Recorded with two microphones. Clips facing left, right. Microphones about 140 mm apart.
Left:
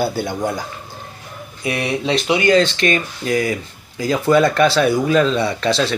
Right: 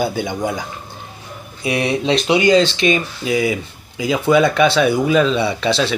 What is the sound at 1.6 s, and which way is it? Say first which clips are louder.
Speech: right 2 dB; 20° right (ahead or behind).